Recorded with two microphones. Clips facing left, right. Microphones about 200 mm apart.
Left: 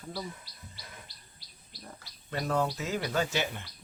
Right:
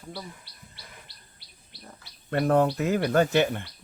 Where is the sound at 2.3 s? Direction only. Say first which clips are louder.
Right 8 dB; 55° right (ahead or behind).